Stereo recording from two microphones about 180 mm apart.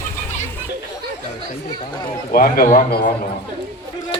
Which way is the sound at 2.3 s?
55° left (ahead or behind).